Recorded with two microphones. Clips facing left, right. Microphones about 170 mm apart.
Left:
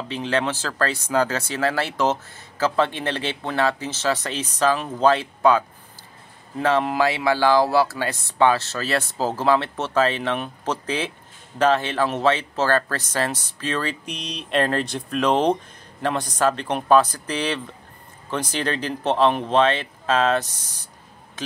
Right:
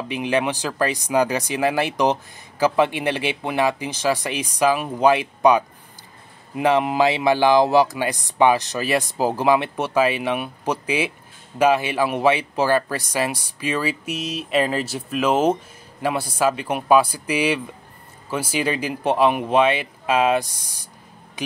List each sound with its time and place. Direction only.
0.1 s speech: 15° right (ahead or behind)